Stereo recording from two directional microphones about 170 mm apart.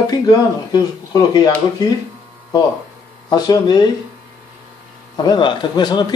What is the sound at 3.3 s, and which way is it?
Speech, 25° left (ahead or behind).